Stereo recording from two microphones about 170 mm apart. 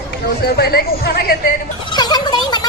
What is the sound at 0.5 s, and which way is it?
Speech, 65° left (ahead or behind).